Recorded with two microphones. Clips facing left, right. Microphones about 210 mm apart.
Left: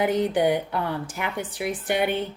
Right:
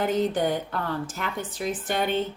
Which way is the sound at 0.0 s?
10° left (ahead or behind).